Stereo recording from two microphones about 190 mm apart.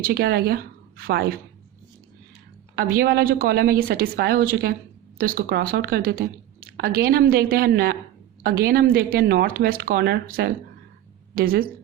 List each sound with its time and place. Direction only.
0.0 s a woman's voice: 55° right (ahead or behind)
2.7 s a woman's voice: 50° right (ahead or behind)